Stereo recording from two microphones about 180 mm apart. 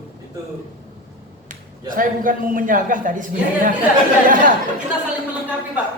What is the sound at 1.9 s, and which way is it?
A man's voice, 50° right (ahead or behind).